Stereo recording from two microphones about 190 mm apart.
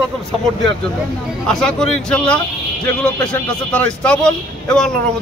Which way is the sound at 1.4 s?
5° left (ahead or behind).